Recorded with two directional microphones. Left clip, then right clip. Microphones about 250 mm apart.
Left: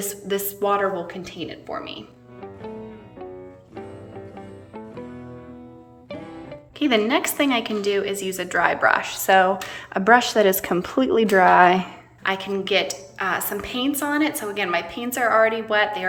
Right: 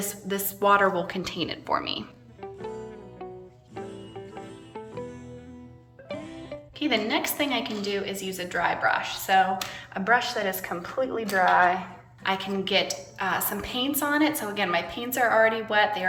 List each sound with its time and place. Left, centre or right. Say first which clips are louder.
0.1 s a woman's voice: left 6 dB; centre
2.4 s music: even; centre
4.4 s music: left 1 dB; centre
6.1 s music: left 1 dB; centre
6.7 s a woman's voice: left 6 dB; centre; by 11.9 s left
12.2 s a woman's voice: left 3 dB; centre